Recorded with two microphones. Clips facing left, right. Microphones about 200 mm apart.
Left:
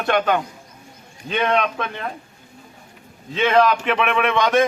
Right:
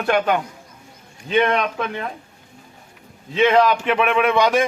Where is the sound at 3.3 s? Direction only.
10° right (ahead or behind).